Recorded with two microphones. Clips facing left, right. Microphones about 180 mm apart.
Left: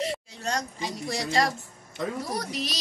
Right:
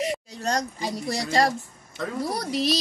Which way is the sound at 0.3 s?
40° right (ahead or behind).